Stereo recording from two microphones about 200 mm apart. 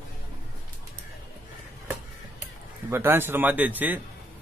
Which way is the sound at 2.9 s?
10° right (ahead or behind).